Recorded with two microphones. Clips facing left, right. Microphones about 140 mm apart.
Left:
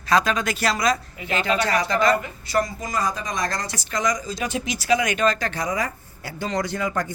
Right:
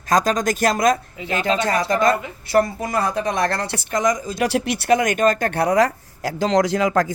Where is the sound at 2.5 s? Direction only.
60° right (ahead or behind).